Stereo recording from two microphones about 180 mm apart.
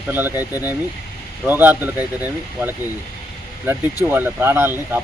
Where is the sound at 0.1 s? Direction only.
10° right (ahead or behind).